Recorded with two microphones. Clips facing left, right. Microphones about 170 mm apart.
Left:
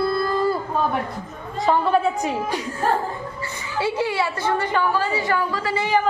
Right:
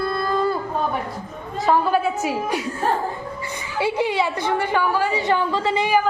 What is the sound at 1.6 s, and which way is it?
Speech, 5° right (ahead or behind).